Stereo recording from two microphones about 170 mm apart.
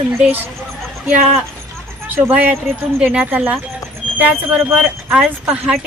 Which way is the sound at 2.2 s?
10° right (ahead or behind).